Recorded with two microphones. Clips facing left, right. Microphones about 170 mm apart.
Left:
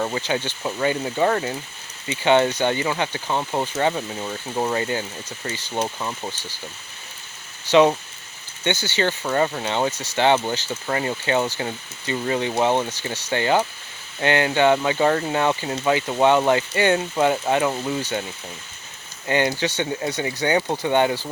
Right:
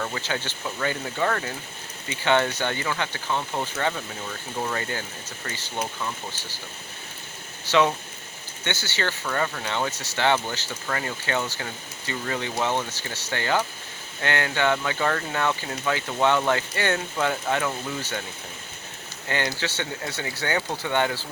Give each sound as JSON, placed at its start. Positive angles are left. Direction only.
{"t": 0.0, "sound": "speech", "side_deg": 20}
{"t": 5.8, "sound": "speech", "side_deg": 25}
{"t": 7.6, "sound": "speech", "side_deg": 20}
{"t": 19.3, "sound": "speech", "side_deg": 20}